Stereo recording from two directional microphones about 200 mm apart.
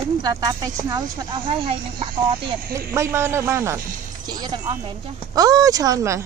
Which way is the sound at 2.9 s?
15° right (ahead or behind).